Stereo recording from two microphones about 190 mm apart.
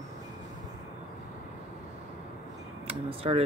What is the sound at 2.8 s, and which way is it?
Speech, 30° right (ahead or behind).